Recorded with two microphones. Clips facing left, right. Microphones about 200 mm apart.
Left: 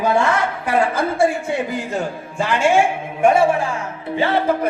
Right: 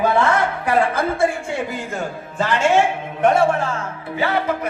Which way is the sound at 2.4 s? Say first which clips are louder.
Left 1 dB; 10° left (ahead or behind).